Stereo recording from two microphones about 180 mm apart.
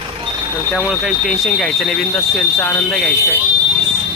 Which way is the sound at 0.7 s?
Centre (ahead or behind).